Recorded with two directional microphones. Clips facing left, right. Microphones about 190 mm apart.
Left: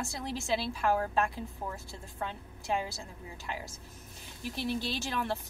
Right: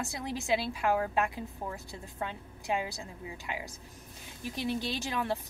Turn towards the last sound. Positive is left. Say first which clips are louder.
# right 1 dB
turn(degrees=-15)  # may be behind; listen again after turning